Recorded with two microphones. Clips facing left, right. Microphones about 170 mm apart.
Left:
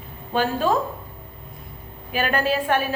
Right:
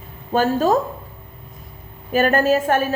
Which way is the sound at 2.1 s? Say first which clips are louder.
Right 6 dB; 45° right (ahead or behind).